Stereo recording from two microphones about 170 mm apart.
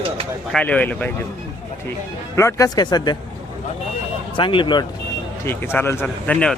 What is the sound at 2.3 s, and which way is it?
Speech, 20° left (ahead or behind).